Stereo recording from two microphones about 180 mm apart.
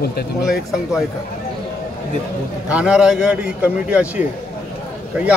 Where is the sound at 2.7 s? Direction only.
5° right (ahead or behind).